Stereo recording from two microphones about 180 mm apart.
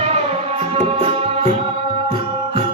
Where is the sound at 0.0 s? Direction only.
35° right (ahead or behind).